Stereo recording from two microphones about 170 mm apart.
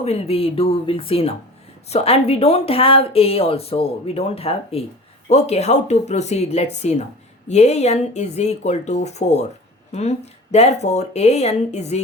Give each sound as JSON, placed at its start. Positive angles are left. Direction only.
{"t": 0.0, "sound": "speech", "side_deg": 35}